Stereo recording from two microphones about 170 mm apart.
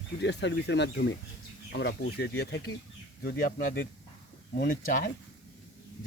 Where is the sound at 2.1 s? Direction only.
75° left (ahead or behind).